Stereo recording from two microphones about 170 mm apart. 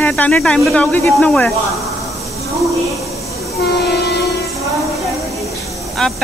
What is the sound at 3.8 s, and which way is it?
Train, 75° left (ahead or behind).